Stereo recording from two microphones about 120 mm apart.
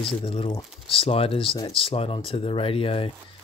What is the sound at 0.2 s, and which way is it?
Speech, 50° left (ahead or behind).